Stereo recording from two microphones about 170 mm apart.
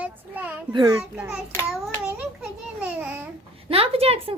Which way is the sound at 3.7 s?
35° right (ahead or behind).